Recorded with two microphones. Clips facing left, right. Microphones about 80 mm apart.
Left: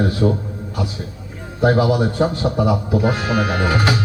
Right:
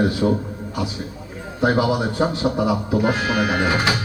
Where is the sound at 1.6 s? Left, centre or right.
Centre.